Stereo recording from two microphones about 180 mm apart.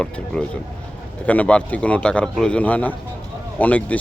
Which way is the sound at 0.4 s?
5° left (ahead or behind).